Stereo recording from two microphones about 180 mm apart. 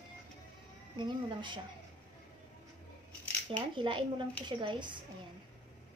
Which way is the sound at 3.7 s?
25° right (ahead or behind).